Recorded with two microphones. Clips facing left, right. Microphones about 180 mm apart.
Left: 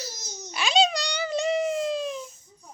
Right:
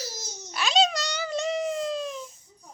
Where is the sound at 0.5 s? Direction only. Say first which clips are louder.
Left 1 dB; centre (ahead or behind).